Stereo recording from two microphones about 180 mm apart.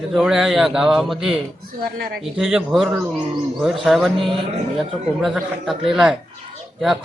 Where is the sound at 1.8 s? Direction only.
60° right (ahead or behind).